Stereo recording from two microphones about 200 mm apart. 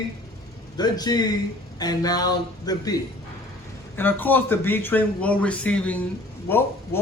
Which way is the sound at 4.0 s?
10° left (ahead or behind).